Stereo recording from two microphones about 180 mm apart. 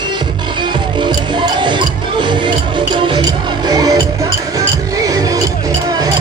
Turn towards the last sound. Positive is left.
turn(degrees=-20)  # may be behind; listen again after turning